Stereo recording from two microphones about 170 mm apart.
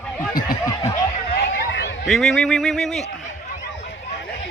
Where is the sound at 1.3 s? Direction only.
85° left.